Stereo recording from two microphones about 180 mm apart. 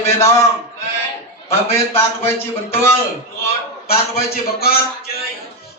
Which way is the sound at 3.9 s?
55° left (ahead or behind).